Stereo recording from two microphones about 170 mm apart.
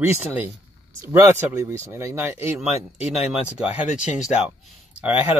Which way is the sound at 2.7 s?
35° left (ahead or behind).